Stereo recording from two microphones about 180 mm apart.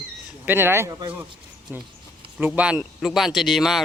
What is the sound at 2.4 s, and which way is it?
Speech, 10° right (ahead or behind).